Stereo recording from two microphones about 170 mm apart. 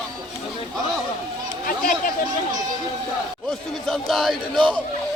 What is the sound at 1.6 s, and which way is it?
Speech, 60° left (ahead or behind).